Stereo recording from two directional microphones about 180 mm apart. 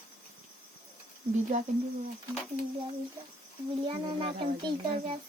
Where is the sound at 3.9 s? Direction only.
25° right (ahead or behind).